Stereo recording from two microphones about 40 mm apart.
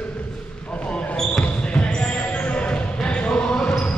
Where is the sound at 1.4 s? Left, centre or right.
Left.